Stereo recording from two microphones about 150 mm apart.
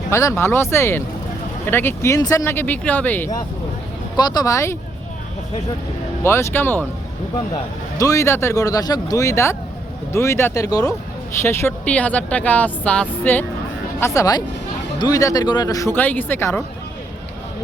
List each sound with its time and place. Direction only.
0.1 s speech: 20° left (ahead or behind)
4.2 s speech: 25° left (ahead or behind)
6.2 s speech: 15° left (ahead or behind)
7.9 s speech: 20° left (ahead or behind)
11.4 s speech: 15° left (ahead or behind)
14.0 s speech: 20° left (ahead or behind)